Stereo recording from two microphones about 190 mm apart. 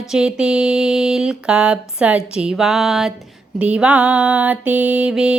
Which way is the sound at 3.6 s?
5° right (ahead or behind).